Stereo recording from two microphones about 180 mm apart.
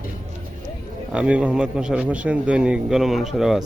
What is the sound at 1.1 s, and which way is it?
A man's voice, 5° right (ahead or behind).